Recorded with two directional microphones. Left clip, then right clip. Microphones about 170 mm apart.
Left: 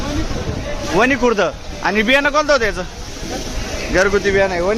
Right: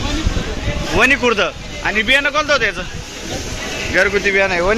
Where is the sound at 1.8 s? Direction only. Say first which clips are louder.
Even; 45° left (ahead or behind).